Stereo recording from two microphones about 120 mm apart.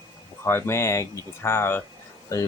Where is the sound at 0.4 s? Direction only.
20° left (ahead or behind).